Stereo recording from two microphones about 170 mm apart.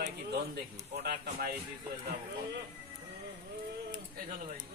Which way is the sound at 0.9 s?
65° right (ahead or behind).